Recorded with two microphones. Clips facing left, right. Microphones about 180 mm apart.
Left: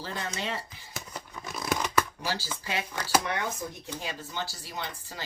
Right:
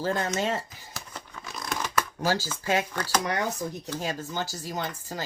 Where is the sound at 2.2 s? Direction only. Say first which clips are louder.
Right 7 dB; 45° right (ahead or behind).